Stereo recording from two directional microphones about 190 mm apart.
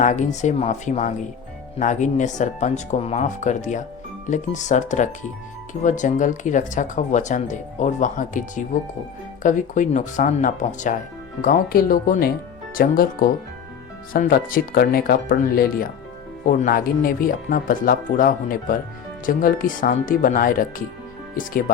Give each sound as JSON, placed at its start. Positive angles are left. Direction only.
{"t": 0.0, "sound": "speech", "side_deg": 40}